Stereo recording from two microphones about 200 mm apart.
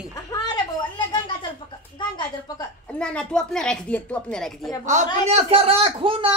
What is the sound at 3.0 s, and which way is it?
A woman's voice, 5° left (ahead or behind).